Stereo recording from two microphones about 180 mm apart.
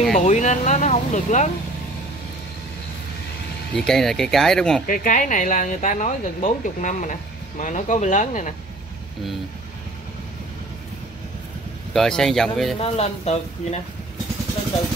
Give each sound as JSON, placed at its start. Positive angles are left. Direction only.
{"t": 0.2, "sound": "speech", "side_deg": 40}
{"t": 3.7, "sound": "speech", "side_deg": 5}
{"t": 4.8, "sound": "speech", "side_deg": 50}
{"t": 11.9, "sound": "speech", "side_deg": 5}
{"t": 12.8, "sound": "speech", "side_deg": 35}